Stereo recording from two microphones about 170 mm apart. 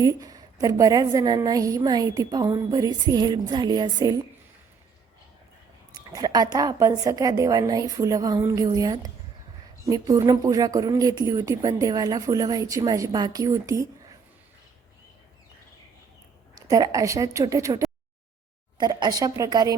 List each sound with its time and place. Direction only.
0.0 s a woman's voice: 20° right (ahead or behind)
5.9 s a woman's voice: 20° right (ahead or behind)
16.6 s a woman's voice: 20° right (ahead or behind)